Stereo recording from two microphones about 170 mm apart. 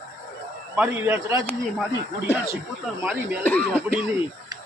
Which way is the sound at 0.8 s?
10° right (ahead or behind).